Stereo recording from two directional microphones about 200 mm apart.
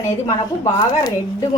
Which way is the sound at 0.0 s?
15° left (ahead or behind).